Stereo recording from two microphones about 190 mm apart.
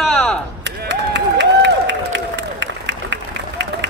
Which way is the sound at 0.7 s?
70° right (ahead or behind).